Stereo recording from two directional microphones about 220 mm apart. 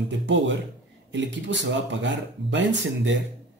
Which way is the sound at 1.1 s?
55° right (ahead or behind).